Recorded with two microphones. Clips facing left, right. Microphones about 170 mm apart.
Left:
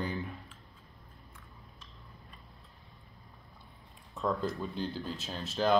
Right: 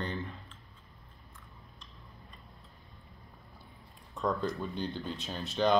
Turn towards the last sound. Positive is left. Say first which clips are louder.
# right 1 dB
turn(degrees=0)  # may be behind; listen again after turning